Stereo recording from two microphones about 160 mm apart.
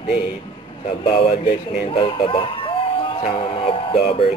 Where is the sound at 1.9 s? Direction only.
35° left (ahead or behind).